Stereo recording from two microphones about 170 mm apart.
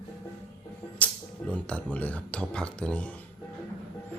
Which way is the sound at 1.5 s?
10° left (ahead or behind).